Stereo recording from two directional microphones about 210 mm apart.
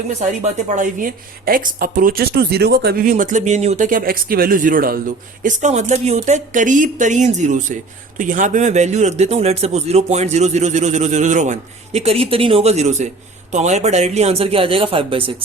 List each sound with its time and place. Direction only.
0.2 s a man's voice: 35° right (ahead or behind)